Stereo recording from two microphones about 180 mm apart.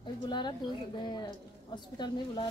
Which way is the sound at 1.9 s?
25° left (ahead or behind).